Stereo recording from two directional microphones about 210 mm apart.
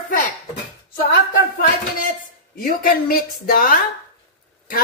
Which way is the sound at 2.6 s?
45° left (ahead or behind).